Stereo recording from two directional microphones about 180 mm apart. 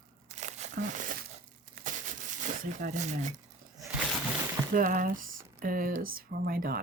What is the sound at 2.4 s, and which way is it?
Speech, 45° right (ahead or behind).